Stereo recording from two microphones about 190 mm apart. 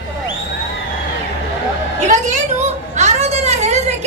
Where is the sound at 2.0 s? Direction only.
40° right (ahead or behind).